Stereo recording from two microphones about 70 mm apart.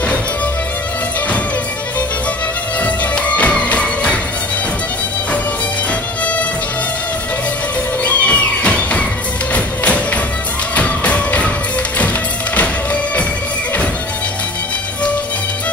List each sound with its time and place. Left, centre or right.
2.8 s music: left
8.0 s music: left
12.5 s music: left